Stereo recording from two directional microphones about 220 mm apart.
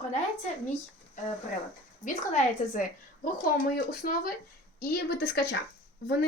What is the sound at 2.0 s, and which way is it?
Speech, 35° left (ahead or behind).